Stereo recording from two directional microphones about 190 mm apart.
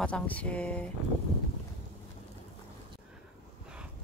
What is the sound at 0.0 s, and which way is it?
Speech, 5° left (ahead or behind).